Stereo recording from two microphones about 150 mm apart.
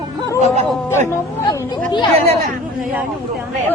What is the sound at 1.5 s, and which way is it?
Speech, 30° left (ahead or behind).